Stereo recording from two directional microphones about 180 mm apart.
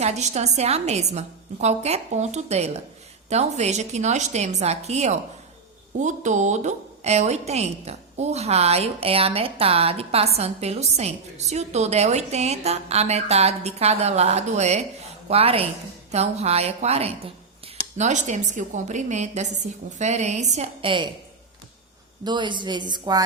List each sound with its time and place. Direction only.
0.0 s a woman's voice: 40° right (ahead or behind)
22.2 s speech: 25° right (ahead or behind)